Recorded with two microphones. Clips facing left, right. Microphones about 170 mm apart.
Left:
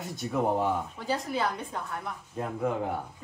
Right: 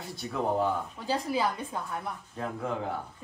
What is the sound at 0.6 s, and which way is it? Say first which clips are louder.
A woman's voice: even; centre (ahead or behind).